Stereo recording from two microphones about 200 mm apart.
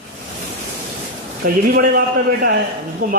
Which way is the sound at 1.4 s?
45° right (ahead or behind).